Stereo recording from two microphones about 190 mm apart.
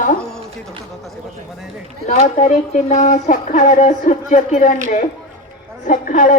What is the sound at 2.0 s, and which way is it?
A woman's voice, 40° left (ahead or behind).